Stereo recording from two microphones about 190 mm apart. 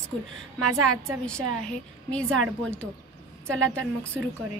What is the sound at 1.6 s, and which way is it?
Speech, 5° left (ahead or behind).